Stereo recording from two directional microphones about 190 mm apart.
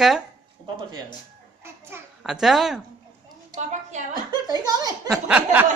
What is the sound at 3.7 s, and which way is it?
Speech, 40° right (ahead or behind).